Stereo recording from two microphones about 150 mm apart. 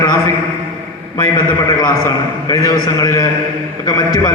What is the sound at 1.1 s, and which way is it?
A man's voice, 25° left (ahead or behind).